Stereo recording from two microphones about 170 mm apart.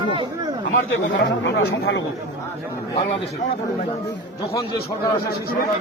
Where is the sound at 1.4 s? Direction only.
90° left.